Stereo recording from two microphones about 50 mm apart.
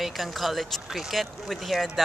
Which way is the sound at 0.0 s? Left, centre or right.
Centre.